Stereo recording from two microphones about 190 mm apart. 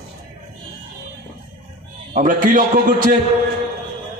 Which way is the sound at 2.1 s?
45° right (ahead or behind).